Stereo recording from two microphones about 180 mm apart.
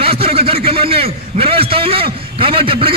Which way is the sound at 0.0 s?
30° right (ahead or behind).